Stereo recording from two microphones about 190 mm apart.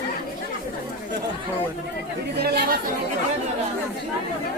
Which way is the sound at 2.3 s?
55° right (ahead or behind).